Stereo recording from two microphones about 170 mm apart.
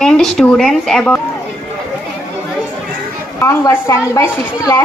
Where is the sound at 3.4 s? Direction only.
15° left (ahead or behind).